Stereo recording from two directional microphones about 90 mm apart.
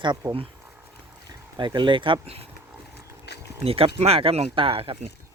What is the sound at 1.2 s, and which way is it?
Speech, 55° right (ahead or behind).